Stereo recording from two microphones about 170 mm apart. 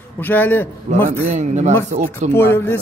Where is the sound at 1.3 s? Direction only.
45° right (ahead or behind).